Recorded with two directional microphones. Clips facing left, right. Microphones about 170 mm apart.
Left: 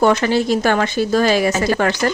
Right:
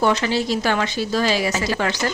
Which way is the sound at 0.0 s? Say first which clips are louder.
Left 5 dB; 50° left (ahead or behind).